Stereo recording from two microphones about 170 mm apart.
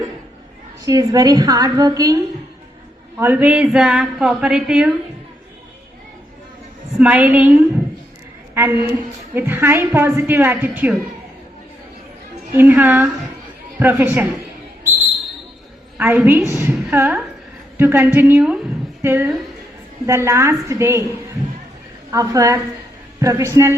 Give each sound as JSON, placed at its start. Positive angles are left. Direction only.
{"t": 0.9, "sound": "a woman's voice", "side_deg": -20}
{"t": 3.2, "sound": "a woman's voice", "side_deg": -10}
{"t": 7.0, "sound": "a woman's voice", "side_deg": -10}
{"t": 8.6, "sound": "a woman's voice", "side_deg": -15}
{"t": 12.5, "sound": "a woman's voice", "side_deg": -10}
{"t": 16.0, "sound": "a woman's voice", "side_deg": -10}
{"t": 22.1, "sound": "a woman's voice", "side_deg": -20}